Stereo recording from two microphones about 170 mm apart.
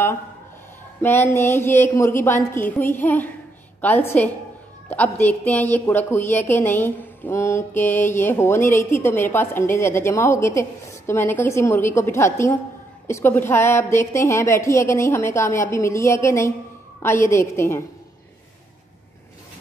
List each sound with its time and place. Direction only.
1.0 s a woman's voice: 15° left (ahead or behind)